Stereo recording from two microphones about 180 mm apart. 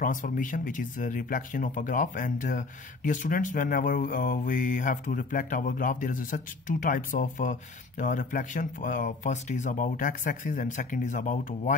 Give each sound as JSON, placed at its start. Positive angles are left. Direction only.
{"t": 0.0, "sound": "speech", "side_deg": 50}